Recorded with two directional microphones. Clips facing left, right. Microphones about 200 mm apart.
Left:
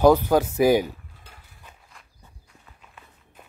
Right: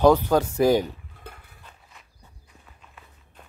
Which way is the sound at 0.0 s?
5° left (ahead or behind).